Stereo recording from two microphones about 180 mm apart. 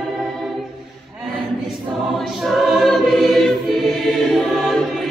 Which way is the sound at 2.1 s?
Centre (ahead or behind).